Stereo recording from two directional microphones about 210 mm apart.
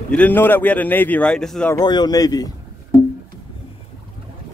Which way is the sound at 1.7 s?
20° left (ahead or behind).